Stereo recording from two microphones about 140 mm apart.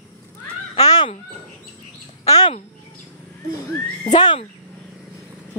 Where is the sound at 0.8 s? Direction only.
30° left (ahead or behind).